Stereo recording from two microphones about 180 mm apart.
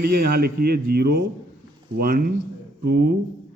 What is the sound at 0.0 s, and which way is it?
Speech, 60° right (ahead or behind).